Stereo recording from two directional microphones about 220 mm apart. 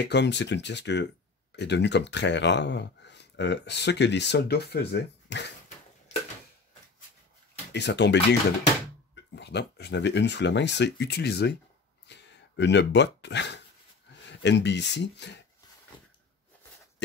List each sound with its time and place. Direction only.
0.0 s speech: 50° left (ahead or behind)
7.7 s speech: 50° left (ahead or behind)